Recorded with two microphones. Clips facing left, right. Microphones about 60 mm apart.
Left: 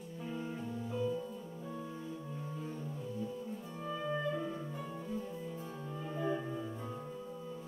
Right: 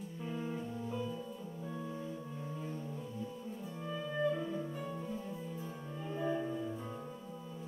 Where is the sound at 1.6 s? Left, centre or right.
Centre.